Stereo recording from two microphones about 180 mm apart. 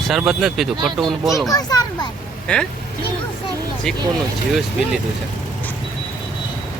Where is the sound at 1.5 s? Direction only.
20° left (ahead or behind).